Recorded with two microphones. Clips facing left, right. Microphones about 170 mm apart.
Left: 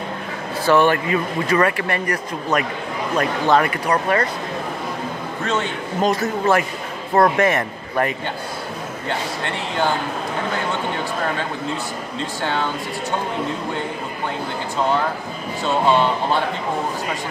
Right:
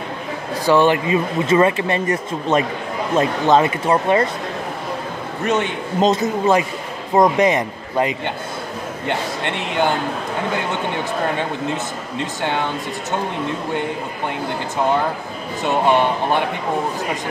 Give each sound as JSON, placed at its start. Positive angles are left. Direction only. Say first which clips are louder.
{"t": 0.7, "sound": "a man's voice", "louder": "right 1 dB", "side_deg": -15}
{"t": 5.4, "sound": "a man's voice", "louder": "right 4 dB", "side_deg": -20}
{"t": 15.6, "sound": "a man's voice", "louder": "right 1 dB", "side_deg": -15}